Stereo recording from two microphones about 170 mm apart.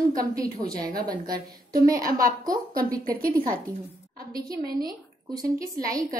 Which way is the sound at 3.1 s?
55° right (ahead or behind).